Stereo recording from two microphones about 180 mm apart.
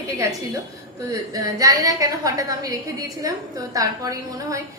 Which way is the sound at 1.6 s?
20° right (ahead or behind).